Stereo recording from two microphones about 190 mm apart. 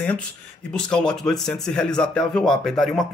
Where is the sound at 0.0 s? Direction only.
5° left (ahead or behind).